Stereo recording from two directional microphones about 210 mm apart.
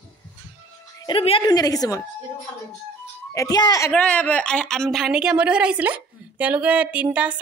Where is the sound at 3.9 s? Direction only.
5° left (ahead or behind).